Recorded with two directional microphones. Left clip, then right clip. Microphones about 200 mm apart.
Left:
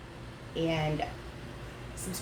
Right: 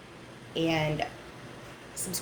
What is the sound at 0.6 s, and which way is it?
Speech, 45° right (ahead or behind).